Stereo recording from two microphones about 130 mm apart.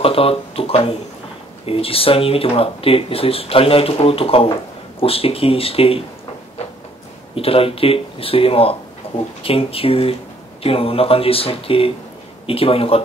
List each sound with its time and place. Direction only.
0.0 s speech: 45° left (ahead or behind)
7.3 s speech: 45° left (ahead or behind)
9.0 s a sound: 45° left (ahead or behind)
9.4 s speech: 45° left (ahead or behind)